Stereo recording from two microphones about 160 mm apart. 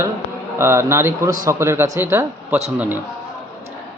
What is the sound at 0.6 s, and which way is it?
A man's voice, 15° right (ahead or behind).